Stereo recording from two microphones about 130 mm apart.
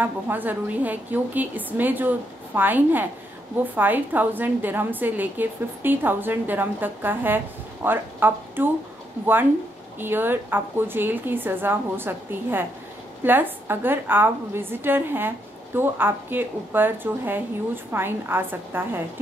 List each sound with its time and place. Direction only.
0.0 s a woman's voice: 15° right (ahead or behind)